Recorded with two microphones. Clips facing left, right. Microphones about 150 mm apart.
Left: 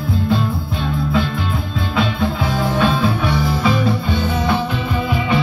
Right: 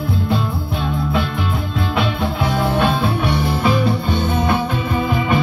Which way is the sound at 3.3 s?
60° right (ahead or behind).